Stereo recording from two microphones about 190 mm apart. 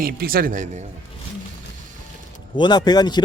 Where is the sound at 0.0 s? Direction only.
50° right (ahead or behind).